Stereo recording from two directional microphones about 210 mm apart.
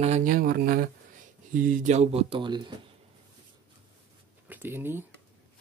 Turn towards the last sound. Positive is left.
turn(degrees=-10)  # may be behind; listen again after turning